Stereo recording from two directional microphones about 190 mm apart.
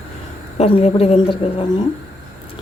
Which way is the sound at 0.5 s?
30° left (ahead or behind).